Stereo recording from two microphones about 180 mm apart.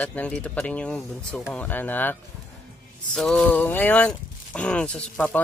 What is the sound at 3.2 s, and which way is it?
Speech, centre (ahead or behind).